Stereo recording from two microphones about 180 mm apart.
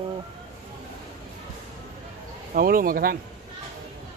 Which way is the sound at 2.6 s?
50° right (ahead or behind).